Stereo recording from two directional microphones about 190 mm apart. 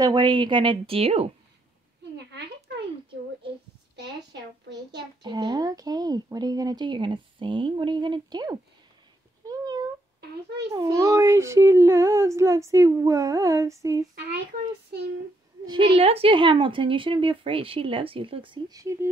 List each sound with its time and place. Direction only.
0.0 s a woman's voice: 25° right (ahead or behind)
3.9 s a sound: 65° right (ahead or behind)
5.2 s speech: 20° right (ahead or behind)
9.5 s cat: 20° right (ahead or behind)
10.7 s speech: 20° right (ahead or behind)
15.7 s a woman's voice: 30° right (ahead or behind)